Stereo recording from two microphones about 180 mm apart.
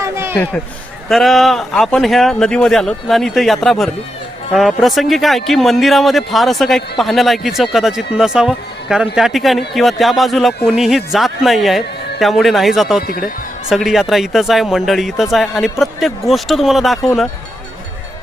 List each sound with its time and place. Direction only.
0.0 s a sound: 15° right (ahead or behind)
1.0 s speech: centre (ahead or behind)
13.1 s speech: 55° left (ahead or behind)
13.7 s speech: centre (ahead or behind)